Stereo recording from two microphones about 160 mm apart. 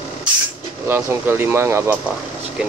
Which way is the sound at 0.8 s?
15° right (ahead or behind).